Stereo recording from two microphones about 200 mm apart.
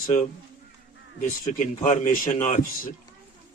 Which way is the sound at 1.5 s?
35° left (ahead or behind).